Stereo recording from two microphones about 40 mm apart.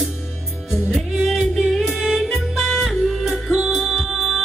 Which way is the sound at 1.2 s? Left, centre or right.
Centre.